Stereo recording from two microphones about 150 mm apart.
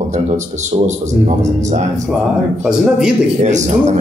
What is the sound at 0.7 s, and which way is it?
A man's voice, 40° right (ahead or behind).